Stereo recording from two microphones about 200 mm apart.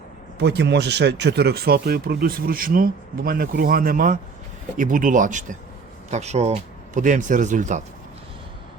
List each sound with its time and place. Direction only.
0.3 s speech: 55° right (ahead or behind); by 7.8 s 40° right (ahead or behind)